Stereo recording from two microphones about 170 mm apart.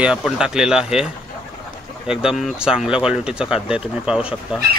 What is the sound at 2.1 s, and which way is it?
Speech, 5° right (ahead or behind).